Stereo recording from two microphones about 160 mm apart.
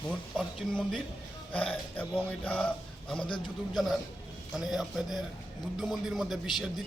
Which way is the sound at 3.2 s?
30° left (ahead or behind).